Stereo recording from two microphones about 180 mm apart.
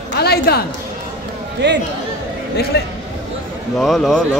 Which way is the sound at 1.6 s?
75° right (ahead or behind).